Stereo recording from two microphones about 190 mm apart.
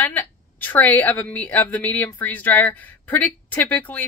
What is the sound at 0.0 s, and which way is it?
Speech, 10° left (ahead or behind).